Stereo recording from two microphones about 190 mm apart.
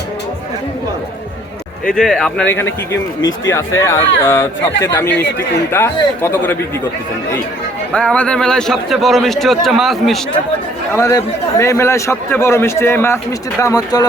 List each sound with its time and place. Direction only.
1.8 s a man's voice: 5° left (ahead or behind)
7.9 s a man's voice: 5° left (ahead or behind)
10.9 s a man's voice: 15° left (ahead or behind)